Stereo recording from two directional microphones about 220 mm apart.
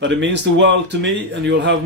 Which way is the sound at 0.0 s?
55° right (ahead or behind).